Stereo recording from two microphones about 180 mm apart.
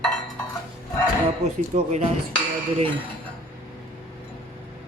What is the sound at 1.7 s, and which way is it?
Speech, 40° right (ahead or behind).